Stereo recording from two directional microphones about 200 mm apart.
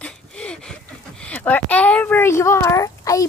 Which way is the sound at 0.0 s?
5° left (ahead or behind).